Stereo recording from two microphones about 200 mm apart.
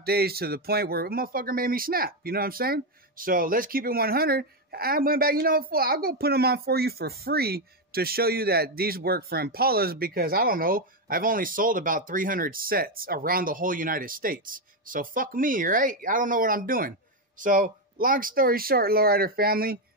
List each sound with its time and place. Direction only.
0.0 s speech: 50° right (ahead or behind)